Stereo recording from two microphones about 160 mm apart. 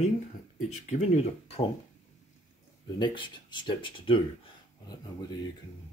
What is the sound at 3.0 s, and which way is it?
Speech, 30° left (ahead or behind).